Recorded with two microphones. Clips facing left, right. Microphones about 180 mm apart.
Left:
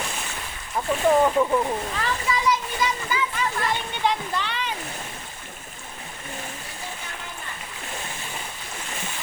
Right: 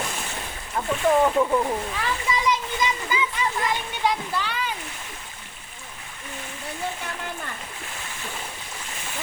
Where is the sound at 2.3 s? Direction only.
20° right (ahead or behind).